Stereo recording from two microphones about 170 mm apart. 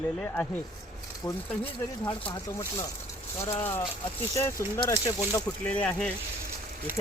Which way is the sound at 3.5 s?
15° left (ahead or behind).